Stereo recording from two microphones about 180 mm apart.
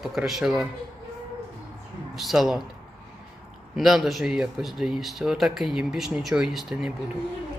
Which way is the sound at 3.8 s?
Centre (ahead or behind).